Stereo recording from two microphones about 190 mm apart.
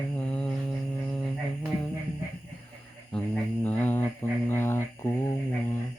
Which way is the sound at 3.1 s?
5° left (ahead or behind).